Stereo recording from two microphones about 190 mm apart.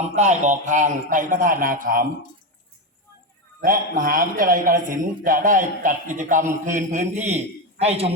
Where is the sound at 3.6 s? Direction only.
45° right (ahead or behind).